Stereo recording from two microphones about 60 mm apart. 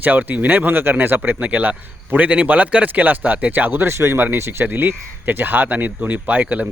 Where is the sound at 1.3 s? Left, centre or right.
Right.